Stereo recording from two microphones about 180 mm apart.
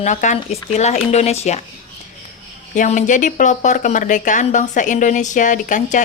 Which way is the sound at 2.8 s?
45° left (ahead or behind).